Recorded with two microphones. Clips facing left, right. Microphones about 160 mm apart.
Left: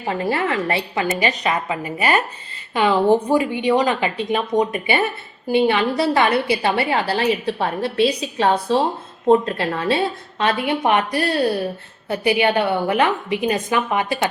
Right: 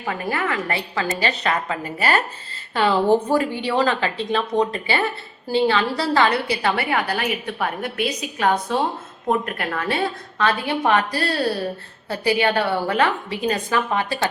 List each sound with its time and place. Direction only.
0.0 s a woman's voice: 25° left (ahead or behind)